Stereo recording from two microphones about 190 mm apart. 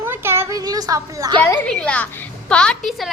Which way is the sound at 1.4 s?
5° left (ahead or behind).